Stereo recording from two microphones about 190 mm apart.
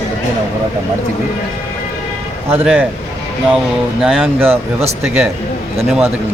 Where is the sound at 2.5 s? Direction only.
10° right (ahead or behind).